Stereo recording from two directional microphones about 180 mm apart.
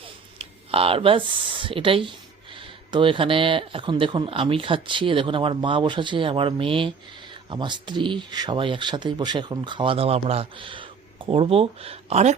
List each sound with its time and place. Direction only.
0.0 s speech: 30° right (ahead or behind)